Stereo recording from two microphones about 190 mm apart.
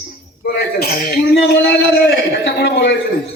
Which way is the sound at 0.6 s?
55° left (ahead or behind).